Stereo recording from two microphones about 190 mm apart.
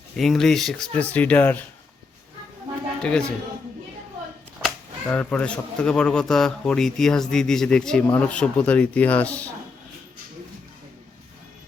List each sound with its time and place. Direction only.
0.2 s speech: centre (ahead or behind)
3.0 s speech: 5° left (ahead or behind)
4.6 s speech: 5° left (ahead or behind)